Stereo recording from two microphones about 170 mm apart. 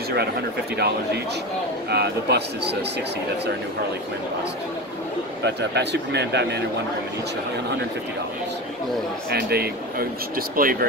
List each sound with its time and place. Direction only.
0.7 s speech: 75° right (ahead or behind)
5.4 s speech: 85° right
9.3 s speech: 65° right (ahead or behind)